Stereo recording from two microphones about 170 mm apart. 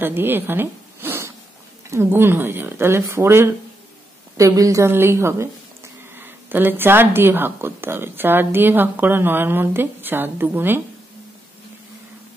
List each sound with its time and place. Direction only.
0.0 s a woman's voice: 10° right (ahead or behind)